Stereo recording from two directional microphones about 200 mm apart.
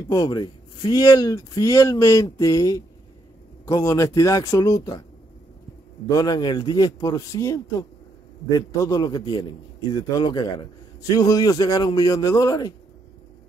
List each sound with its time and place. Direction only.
0.1 s speech: 20° left (ahead or behind)
6.0 s a man's voice: 20° left (ahead or behind)